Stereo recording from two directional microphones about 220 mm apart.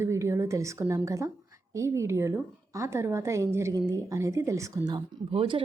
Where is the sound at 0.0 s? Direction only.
15° right (ahead or behind).